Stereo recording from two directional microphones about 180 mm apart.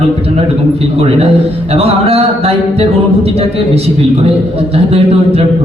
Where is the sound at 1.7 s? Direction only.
35° right (ahead or behind).